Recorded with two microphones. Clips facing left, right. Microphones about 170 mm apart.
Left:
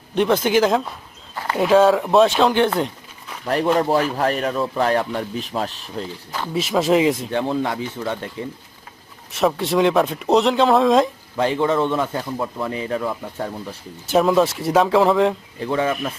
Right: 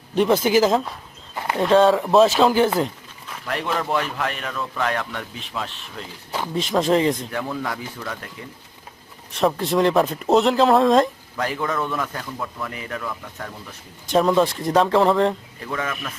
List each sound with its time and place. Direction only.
0.4 s speech: centre (ahead or behind)
3.4 s speech: 35° left (ahead or behind)
6.5 s speech: 5° left (ahead or behind)
7.3 s speech: 25° left (ahead or behind)
9.3 s speech: centre (ahead or behind)
11.3 s speech: 25° left (ahead or behind)
14.1 s speech: 5° left (ahead or behind)
15.6 s speech: 30° left (ahead or behind)